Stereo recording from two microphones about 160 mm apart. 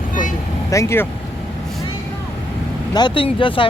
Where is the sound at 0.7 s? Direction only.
15° left (ahead or behind).